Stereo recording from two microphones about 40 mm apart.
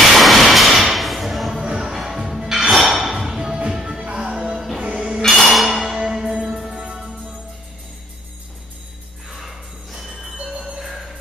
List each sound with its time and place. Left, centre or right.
0.1 s whip: centre
1.6 s music: right
1.9 s music: centre
4.0 s music: right
5.5 s music: centre
5.8 s music: centre
9.4 s jingle bell: centre
10.3 s music: right
10.8 s music: centre